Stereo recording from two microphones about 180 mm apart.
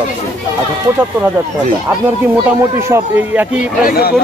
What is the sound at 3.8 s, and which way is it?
Speech, 55° left (ahead or behind).